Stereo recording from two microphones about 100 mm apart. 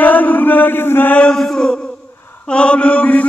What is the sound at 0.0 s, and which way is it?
Chant, 15° left (ahead or behind).